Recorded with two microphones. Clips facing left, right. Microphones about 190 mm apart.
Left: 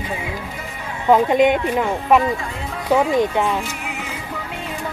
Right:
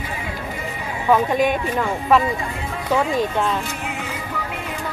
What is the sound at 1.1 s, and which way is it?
Speech, 20° left (ahead or behind).